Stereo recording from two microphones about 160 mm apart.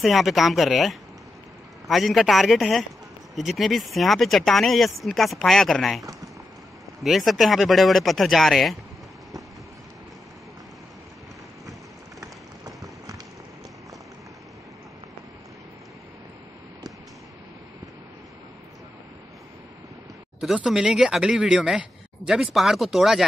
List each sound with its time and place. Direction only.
0.0 s speech: centre (ahead or behind)
12.2 s a sound: 20° right (ahead or behind)
20.3 s speech: 5° right (ahead or behind)